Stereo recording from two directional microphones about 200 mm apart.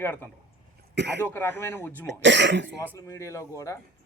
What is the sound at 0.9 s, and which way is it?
Speech, 60° right (ahead or behind).